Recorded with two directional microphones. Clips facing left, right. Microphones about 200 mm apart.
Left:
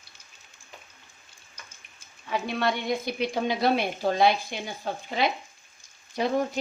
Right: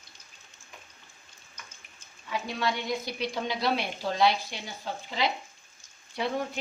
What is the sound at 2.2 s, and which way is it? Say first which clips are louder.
A woman's voice: left 4 dB; 60° left (ahead or behind).